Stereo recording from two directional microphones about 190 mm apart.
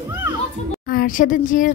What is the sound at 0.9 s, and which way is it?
Speech, 45° left (ahead or behind).